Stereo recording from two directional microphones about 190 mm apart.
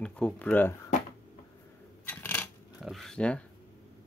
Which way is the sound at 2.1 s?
10° left (ahead or behind).